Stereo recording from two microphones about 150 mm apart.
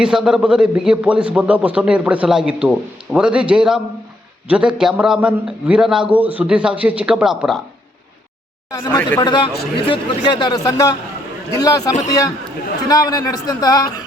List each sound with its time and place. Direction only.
0.0 s a man's voice: 5° right (ahead or behind)
9.2 s a man's voice: 30° left (ahead or behind)
9.5 s a man's voice: 90° left
9.8 s speech: 35° left (ahead or behind)